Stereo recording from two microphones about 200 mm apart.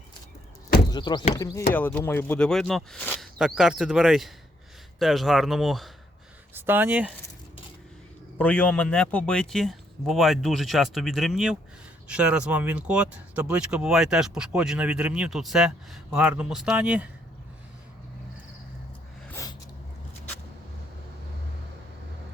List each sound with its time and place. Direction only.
0.9 s speech: 20° left (ahead or behind); by 7.1 s 10° right (ahead or behind)
8.4 s speech: 5° left (ahead or behind)
19.3 s a sound: 15° left (ahead or behind)